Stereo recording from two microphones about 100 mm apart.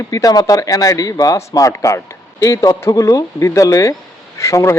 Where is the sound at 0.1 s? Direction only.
40° left (ahead or behind).